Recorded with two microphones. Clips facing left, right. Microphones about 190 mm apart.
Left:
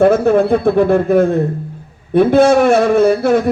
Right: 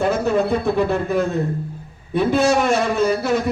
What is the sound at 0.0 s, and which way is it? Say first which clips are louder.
A man's voice: left 8 dB; 55° left (ahead or behind).